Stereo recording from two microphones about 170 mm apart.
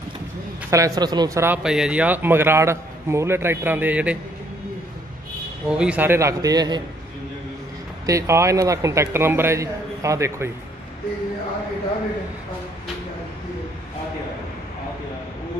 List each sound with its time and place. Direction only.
0.7 s speech: 20° right (ahead or behind)
1.6 s a man's voice: 5° right (ahead or behind)
5.7 s a man's voice: 5° right (ahead or behind); by 6.8 s 25° right (ahead or behind)
8.1 s a man's voice: 15° right (ahead or behind)